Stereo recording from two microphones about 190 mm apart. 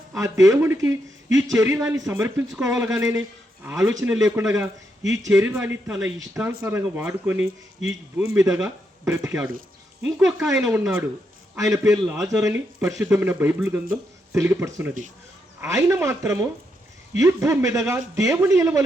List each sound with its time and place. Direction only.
0.1 s speech: 15° right (ahead or behind)
8.5 s speech: 5° right (ahead or behind)